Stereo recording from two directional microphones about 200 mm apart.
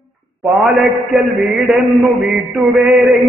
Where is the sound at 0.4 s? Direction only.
Centre (ahead or behind).